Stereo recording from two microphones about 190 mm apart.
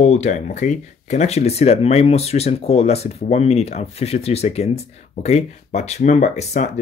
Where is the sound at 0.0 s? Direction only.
35° left (ahead or behind).